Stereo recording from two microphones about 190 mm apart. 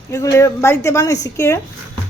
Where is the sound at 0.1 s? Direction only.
15° left (ahead or behind).